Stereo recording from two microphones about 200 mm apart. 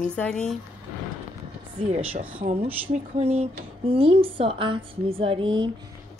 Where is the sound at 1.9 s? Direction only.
30° right (ahead or behind).